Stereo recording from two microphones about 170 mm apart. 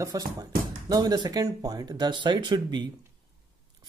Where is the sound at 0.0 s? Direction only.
20° right (ahead or behind).